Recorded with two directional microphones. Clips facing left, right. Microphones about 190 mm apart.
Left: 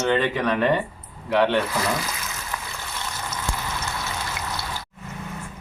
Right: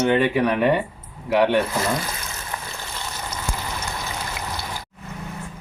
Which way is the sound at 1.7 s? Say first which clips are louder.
Right 1 dB; 25° right (ahead or behind).